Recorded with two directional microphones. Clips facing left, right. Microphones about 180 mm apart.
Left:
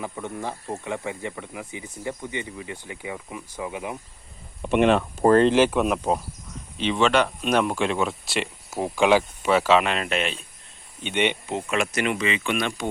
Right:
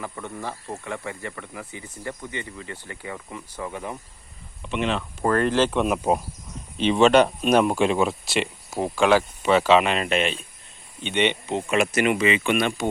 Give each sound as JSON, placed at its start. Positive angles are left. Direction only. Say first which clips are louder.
{"t": 0.0, "sound": "speech", "louder": "left 2 dB", "side_deg": 15}
{"t": 4.6, "sound": "speech", "louder": "left 7 dB", "side_deg": 55}
{"t": 5.2, "sound": "speech", "louder": "left 4 dB", "side_deg": 25}
{"t": 5.7, "sound": "speech", "louder": "even", "side_deg": 0}
{"t": 7.0, "sound": "speech", "louder": "right 5 dB", "side_deg": -45}
{"t": 7.4, "sound": "speech", "louder": "right 3 dB", "side_deg": -10}
{"t": 9.0, "sound": "speech", "louder": "even", "side_deg": 15}